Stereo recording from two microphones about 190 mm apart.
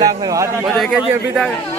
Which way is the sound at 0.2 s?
15° right (ahead or behind).